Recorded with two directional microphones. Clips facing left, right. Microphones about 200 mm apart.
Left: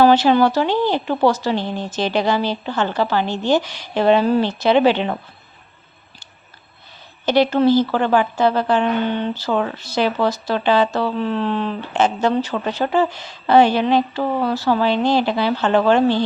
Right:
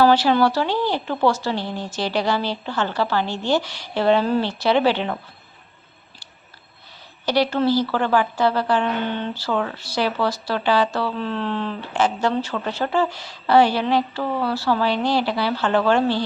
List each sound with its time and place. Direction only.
0.0 s a woman's voice: 20° left (ahead or behind)
7.3 s a woman's voice: 20° left (ahead or behind)